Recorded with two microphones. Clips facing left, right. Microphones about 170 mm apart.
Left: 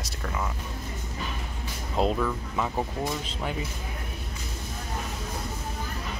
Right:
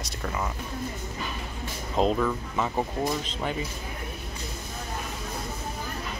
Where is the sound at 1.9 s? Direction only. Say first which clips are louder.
Right 2 dB; 5° left (ahead or behind).